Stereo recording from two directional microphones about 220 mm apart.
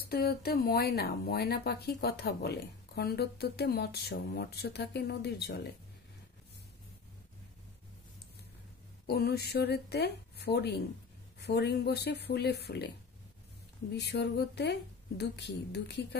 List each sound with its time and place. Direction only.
0.0 s speech: 45° left (ahead or behind)
9.0 s speech: 45° left (ahead or behind)
13.9 s speech: 50° left (ahead or behind)